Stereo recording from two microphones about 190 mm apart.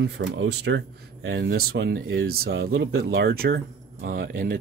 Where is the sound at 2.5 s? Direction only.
90° right.